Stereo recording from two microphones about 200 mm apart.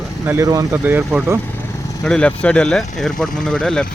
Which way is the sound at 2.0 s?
5° left (ahead or behind).